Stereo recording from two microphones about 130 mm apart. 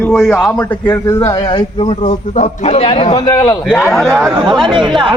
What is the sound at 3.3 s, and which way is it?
Speech, 20° left (ahead or behind).